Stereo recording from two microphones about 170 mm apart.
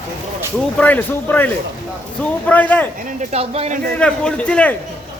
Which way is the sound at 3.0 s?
40° right (ahead or behind).